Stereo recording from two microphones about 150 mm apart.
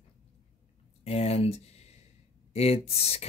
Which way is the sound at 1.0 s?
45° left (ahead or behind).